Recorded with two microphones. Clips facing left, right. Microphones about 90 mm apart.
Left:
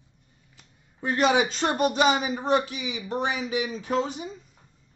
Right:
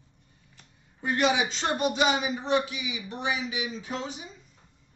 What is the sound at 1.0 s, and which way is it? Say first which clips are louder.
A man's voice: left 3 dB; 35° left (ahead or behind).